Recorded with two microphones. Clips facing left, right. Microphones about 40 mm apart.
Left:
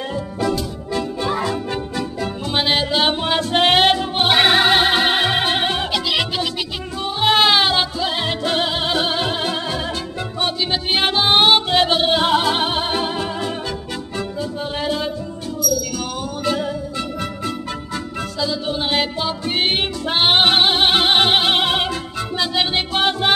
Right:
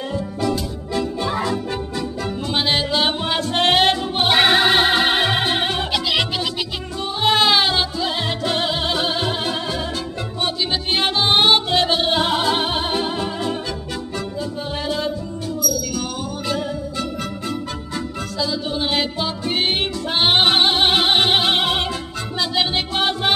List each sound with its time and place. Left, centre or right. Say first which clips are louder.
0.1 s music: even; centre
0.9 s music: even; centre
5.4 s music: left 1 dB; centre
5.9 s music: even; centre
7.2 s music: left 1 dB; centre
10.4 s music: left 1 dB; centre
14.8 s music: left 1 dB; centre
16.4 s music: left 3 dB; centre
18.4 s music: even; centre